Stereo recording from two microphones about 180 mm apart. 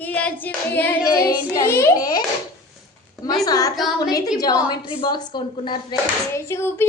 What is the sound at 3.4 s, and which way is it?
Speech, 20° left (ahead or behind).